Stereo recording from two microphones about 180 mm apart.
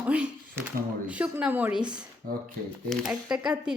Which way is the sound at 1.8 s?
25° right (ahead or behind).